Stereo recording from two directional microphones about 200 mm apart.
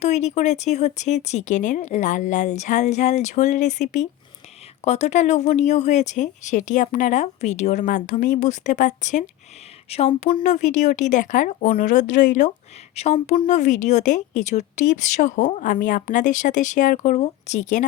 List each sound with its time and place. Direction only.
0.0 s speech: 35° left (ahead or behind)